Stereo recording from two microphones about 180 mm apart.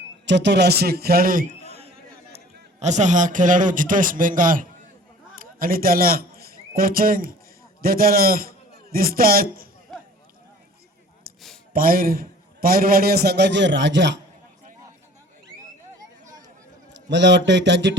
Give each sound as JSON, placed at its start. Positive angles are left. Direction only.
{"t": 0.3, "sound": "a man's voice", "side_deg": -75}
{"t": 2.8, "sound": "a man's voice", "side_deg": -40}
{"t": 11.3, "sound": "a sound", "side_deg": -55}
{"t": 11.7, "sound": "a man's voice", "side_deg": -50}
{"t": 16.9, "sound": "a man's voice", "side_deg": -75}